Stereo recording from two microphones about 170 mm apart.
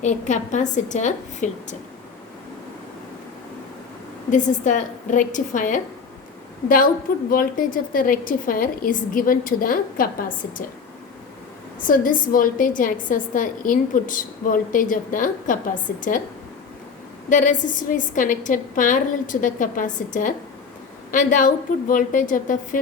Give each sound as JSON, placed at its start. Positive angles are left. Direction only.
{"t": 0.0, "sound": "a woman's voice", "side_deg": 45}
{"t": 4.3, "sound": "a woman's voice", "side_deg": 45}
{"t": 11.9, "sound": "a woman's voice", "side_deg": 50}
{"t": 17.2, "sound": "a woman's voice", "side_deg": 50}